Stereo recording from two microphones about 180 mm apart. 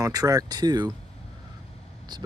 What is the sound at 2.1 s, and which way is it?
Vehicle, 25° right (ahead or behind).